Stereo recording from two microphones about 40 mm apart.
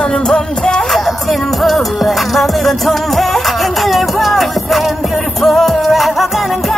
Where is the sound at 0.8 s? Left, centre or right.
Centre.